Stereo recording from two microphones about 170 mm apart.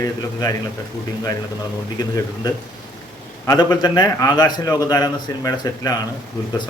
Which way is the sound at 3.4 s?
20° left (ahead or behind).